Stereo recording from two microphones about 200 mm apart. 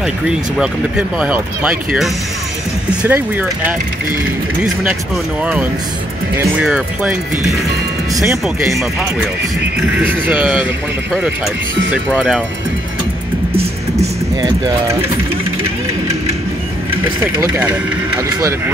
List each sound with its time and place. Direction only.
0.0 s speech: 5° right (ahead or behind)
5.4 s speech: 10° right (ahead or behind)
9.9 s speech: 10° right (ahead or behind)
11.9 s speech: 5° right (ahead or behind)
14.3 s speech: 20° right (ahead or behind)
17.0 s speech: 10° right (ahead or behind)